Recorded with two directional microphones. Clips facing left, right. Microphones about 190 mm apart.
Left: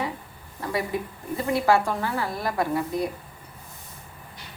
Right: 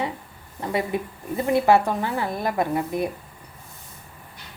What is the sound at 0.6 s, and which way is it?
A woman's voice, 20° right (ahead or behind).